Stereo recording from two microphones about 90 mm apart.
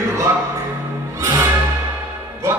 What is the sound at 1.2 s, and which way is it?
Music, 30° right (ahead or behind).